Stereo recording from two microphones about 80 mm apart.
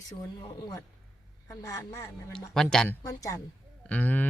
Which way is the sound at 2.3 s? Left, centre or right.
Centre.